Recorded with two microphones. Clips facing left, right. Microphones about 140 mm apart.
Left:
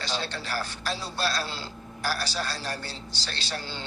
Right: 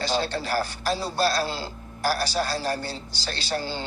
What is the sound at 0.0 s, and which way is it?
Speech, 45° right (ahead or behind).